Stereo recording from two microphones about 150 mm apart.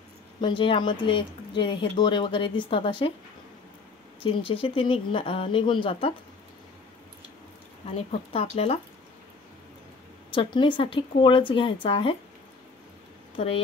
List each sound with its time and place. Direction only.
0.4 s speech: 35° left (ahead or behind)
4.2 s speech: 35° left (ahead or behind)
7.9 s speech: 40° left (ahead or behind)
10.3 s speech: 35° left (ahead or behind)